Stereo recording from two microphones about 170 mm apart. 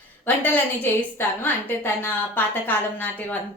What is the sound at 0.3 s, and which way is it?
Speech, 10° left (ahead or behind).